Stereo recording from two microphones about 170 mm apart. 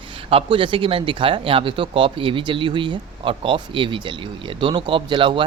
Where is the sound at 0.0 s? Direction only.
30° right (ahead or behind).